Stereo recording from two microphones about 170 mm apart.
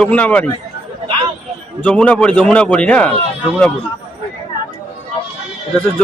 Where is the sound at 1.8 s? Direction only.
10° left (ahead or behind).